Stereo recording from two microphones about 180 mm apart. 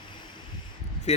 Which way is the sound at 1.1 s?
40° left (ahead or behind).